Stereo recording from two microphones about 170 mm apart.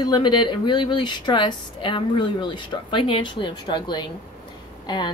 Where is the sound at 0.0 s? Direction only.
25° left (ahead or behind).